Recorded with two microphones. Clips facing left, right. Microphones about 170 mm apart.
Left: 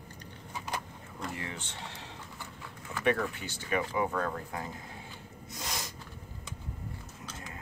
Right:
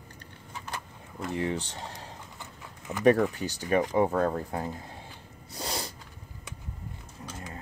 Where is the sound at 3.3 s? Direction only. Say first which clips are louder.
Right 6 dB; 40° right (ahead or behind).